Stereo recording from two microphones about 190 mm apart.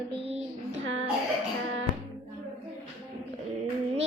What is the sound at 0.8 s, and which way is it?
Music, 90° right.